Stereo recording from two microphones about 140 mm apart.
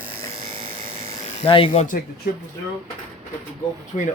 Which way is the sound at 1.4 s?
40° left (ahead or behind).